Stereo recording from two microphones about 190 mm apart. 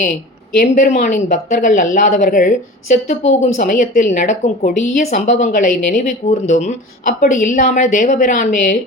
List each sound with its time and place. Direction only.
0.5 s speech: 45° left (ahead or behind)